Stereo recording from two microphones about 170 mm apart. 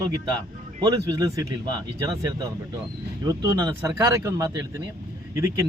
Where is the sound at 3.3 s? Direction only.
20° right (ahead or behind).